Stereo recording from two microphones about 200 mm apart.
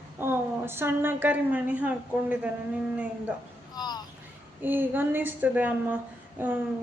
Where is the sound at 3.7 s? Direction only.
20° left (ahead or behind).